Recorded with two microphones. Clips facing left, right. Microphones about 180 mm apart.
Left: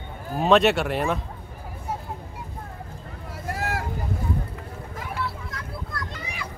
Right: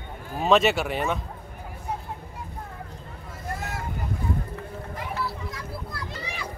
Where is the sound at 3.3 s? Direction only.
70° left (ahead or behind).